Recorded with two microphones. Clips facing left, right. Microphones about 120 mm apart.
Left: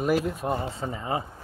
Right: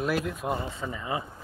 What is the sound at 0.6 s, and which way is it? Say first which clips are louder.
Speech: left 3 dB; 30° left (ahead or behind).